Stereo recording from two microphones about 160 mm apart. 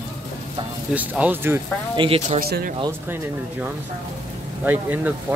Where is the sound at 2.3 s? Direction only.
70° right (ahead or behind).